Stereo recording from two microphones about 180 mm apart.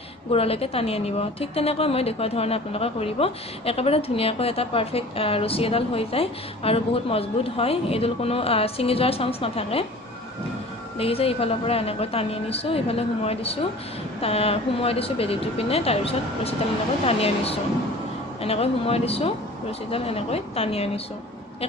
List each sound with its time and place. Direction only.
0.3 s a woman's voice: 35° left (ahead or behind)
11.0 s a woman's voice: 30° left (ahead or behind)